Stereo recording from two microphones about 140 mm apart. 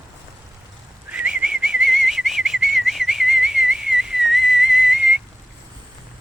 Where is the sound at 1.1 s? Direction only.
10° right (ahead or behind).